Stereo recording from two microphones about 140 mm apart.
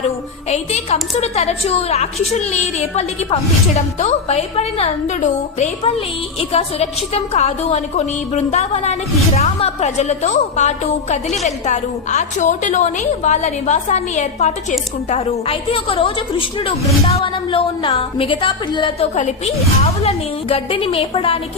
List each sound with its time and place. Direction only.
0.5 s a woman's voice: 50° left (ahead or behind)
4.0 s a woman's voice: 50° left (ahead or behind)
17.2 s a woman's voice: 40° left (ahead or behind)
19.1 s a woman's voice: 50° left (ahead or behind)